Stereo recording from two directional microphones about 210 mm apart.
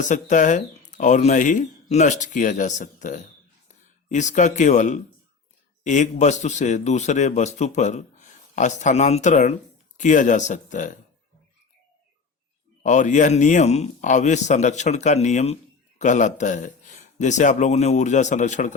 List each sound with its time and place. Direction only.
0.0 s a man's voice: 35° left (ahead or behind)
12.8 s a man's voice: 35° left (ahead or behind)